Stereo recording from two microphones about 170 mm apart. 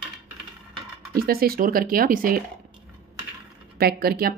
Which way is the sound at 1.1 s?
65° right (ahead or behind).